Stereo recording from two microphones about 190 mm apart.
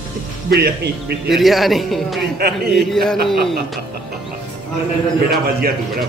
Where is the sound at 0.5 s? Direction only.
55° right (ahead or behind).